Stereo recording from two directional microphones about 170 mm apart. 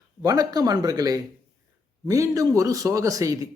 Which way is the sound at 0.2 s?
20° right (ahead or behind).